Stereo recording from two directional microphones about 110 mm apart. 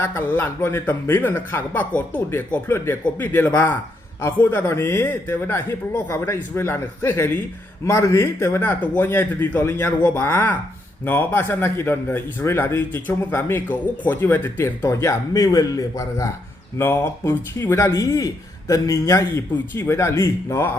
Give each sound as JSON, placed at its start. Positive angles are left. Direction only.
{"t": 0.0, "sound": "a man's voice", "side_deg": 15}